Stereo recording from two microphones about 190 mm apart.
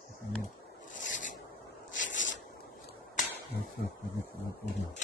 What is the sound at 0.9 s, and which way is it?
Rub, 45° left (ahead or behind).